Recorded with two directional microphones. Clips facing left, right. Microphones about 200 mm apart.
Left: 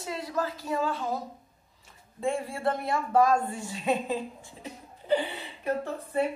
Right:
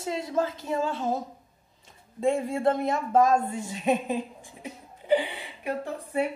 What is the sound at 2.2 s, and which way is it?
A man's voice, 20° right (ahead or behind).